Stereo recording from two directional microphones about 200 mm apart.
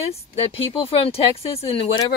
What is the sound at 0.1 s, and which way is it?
Speech, 30° left (ahead or behind).